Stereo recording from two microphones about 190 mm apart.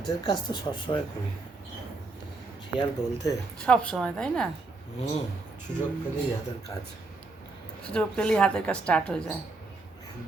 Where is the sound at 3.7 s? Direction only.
5° left (ahead or behind).